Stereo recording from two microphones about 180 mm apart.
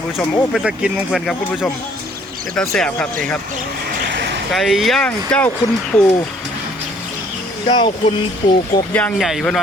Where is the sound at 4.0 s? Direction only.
70° right (ahead or behind).